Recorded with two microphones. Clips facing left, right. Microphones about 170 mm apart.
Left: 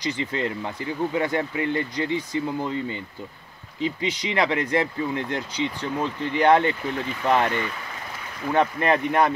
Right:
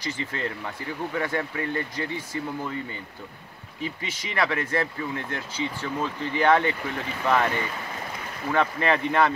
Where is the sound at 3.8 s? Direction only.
20° left (ahead or behind).